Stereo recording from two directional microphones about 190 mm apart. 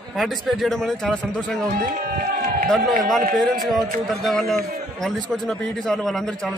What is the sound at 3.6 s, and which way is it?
A man's voice, centre (ahead or behind).